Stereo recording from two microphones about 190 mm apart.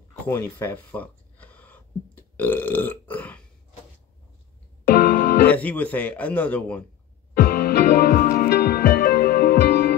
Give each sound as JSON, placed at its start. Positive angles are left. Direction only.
{"t": 0.3, "sound": "a sound", "side_deg": 15}
{"t": 4.8, "sound": "music", "side_deg": 50}
{"t": 5.5, "sound": "a man's voice", "side_deg": 10}
{"t": 7.3, "sound": "music", "side_deg": 50}